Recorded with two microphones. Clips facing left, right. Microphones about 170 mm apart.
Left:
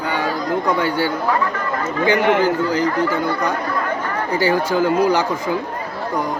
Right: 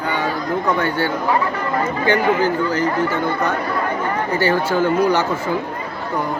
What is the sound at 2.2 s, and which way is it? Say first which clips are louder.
Speech: left 3 dB; 75° left (ahead or behind).